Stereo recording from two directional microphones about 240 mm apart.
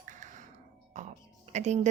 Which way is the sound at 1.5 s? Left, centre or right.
Right.